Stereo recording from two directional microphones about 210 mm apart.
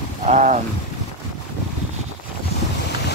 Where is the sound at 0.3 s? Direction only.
35° right (ahead or behind).